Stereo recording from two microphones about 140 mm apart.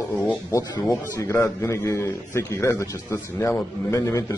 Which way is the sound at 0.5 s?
25° left (ahead or behind).